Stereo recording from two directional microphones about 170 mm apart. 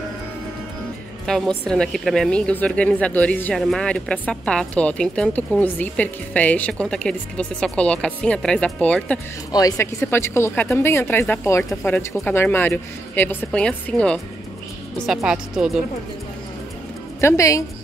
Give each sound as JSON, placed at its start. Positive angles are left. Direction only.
{"t": 1.2, "sound": "a woman's voice", "side_deg": 5}
{"t": 9.5, "sound": "speech", "side_deg": 20}
{"t": 15.0, "sound": "speech", "side_deg": -5}
{"t": 17.2, "sound": "speech", "side_deg": 15}